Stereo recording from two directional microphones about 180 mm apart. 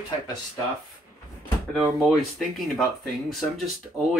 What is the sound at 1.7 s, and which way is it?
Speech, centre (ahead or behind).